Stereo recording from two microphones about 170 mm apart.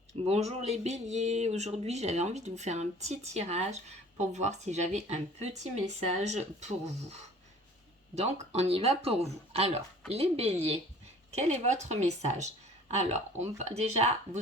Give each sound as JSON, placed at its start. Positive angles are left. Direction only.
{"t": 0.1, "sound": "a woman's voice", "side_deg": -40}